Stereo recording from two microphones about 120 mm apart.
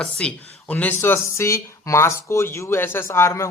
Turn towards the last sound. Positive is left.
turn(degrees=25)  # may be behind; listen again after turning